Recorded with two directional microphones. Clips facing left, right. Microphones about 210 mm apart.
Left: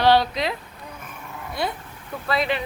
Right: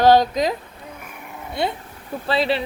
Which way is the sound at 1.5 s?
25° right (ahead or behind).